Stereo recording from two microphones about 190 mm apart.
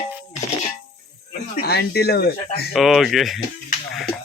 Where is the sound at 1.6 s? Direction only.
55° left (ahead or behind).